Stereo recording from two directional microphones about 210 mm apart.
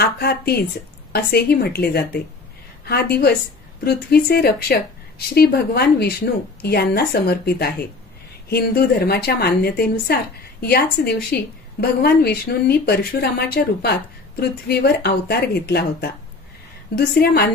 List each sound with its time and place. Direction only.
0.0 s a woman's voice: 45° left (ahead or behind)